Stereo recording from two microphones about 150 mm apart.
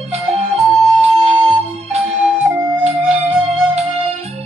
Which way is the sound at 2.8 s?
45° right (ahead or behind).